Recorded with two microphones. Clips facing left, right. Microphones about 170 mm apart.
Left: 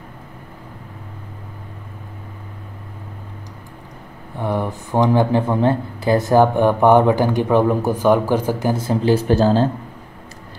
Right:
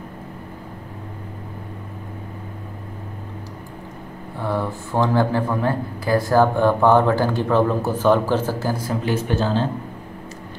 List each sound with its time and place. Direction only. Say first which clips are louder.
4.4 s speech: left 2 dB; 15° left (ahead or behind); by 9.7 s 40° left (ahead or behind)